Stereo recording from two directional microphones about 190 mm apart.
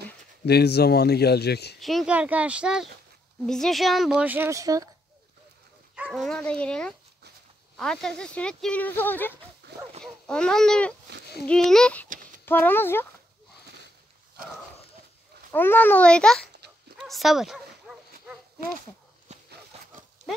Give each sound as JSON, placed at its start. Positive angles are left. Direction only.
{"t": 0.5, "sound": "speech", "side_deg": 60}
{"t": 1.8, "sound": "speech", "side_deg": 0}
{"t": 5.9, "sound": "speech", "side_deg": -5}
{"t": 9.7, "sound": "dog", "side_deg": -60}
{"t": 10.0, "sound": "a child's voice", "side_deg": 5}
{"t": 15.5, "sound": "a child's voice", "side_deg": 10}
{"t": 17.0, "sound": "dog", "side_deg": 0}
{"t": 19.3, "sound": "a sound", "side_deg": -35}
{"t": 20.2, "sound": "pig", "side_deg": -40}